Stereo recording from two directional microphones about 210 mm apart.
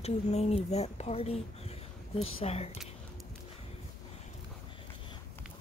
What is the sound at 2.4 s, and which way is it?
Speech, 30° left (ahead or behind).